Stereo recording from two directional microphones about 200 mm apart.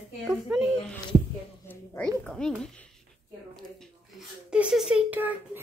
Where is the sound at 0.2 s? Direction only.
Centre (ahead or behind).